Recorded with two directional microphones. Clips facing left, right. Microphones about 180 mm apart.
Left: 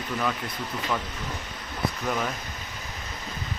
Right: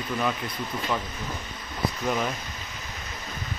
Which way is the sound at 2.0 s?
5° right (ahead or behind).